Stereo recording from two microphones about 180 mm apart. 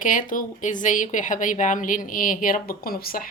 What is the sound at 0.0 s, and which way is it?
A woman's voice, 45° left (ahead or behind).